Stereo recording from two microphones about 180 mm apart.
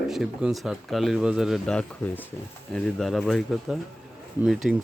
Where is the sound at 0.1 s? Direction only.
Centre (ahead or behind).